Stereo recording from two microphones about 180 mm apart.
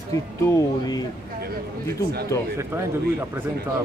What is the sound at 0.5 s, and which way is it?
Speech, 20° left (ahead or behind).